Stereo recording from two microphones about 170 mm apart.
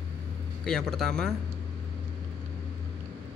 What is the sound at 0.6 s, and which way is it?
Speech, 5° left (ahead or behind).